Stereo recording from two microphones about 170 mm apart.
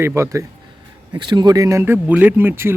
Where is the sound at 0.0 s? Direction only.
15° right (ahead or behind).